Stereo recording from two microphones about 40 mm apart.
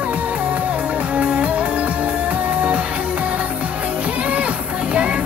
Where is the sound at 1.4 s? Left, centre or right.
Right.